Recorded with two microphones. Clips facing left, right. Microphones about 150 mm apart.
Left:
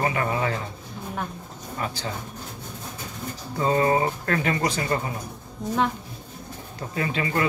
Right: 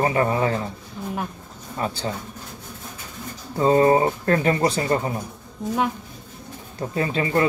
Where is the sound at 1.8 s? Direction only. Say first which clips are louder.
Right 4 dB; 35° right (ahead or behind).